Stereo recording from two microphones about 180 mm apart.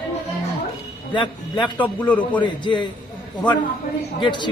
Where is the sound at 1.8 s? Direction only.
10° left (ahead or behind).